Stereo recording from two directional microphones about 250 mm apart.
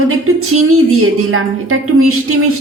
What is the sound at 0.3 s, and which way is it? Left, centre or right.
Speech, right.